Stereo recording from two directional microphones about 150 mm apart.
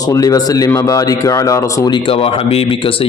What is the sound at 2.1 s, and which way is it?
Speech, 40° left (ahead or behind).